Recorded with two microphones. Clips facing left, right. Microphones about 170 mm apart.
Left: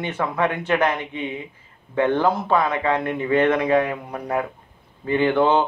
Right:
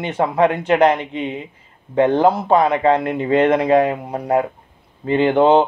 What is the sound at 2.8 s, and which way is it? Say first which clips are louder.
Speech: right 6 dB; 35° right (ahead or behind).